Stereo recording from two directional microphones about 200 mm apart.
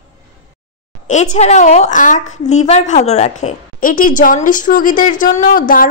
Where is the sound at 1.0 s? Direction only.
35° left (ahead or behind).